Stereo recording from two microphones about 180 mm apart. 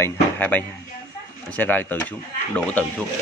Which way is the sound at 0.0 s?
10° left (ahead or behind).